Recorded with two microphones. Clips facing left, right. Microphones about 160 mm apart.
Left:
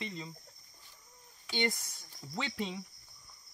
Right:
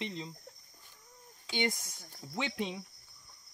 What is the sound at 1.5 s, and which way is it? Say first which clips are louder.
Speech: even; 15° right (ahead or behind).